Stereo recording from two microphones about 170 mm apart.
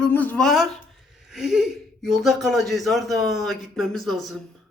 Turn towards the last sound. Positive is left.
turn(degrees=0)  # may be behind; listen again after turning